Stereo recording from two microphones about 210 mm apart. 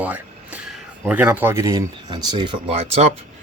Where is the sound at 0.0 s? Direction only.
5° right (ahead or behind).